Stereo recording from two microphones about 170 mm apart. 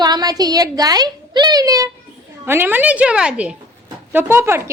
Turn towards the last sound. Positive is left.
turn(degrees=-15)  # may be behind; listen again after turning